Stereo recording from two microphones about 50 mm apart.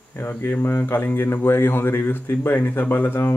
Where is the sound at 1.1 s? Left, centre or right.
Left.